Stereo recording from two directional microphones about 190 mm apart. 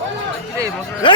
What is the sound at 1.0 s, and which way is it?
Speech, 25° left (ahead or behind).